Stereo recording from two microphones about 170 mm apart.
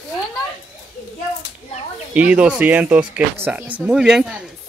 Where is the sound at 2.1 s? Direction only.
5° right (ahead or behind).